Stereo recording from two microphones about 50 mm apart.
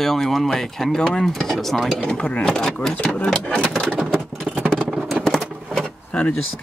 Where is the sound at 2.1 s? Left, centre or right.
Left.